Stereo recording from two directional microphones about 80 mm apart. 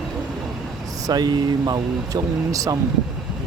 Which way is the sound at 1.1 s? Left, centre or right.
Right.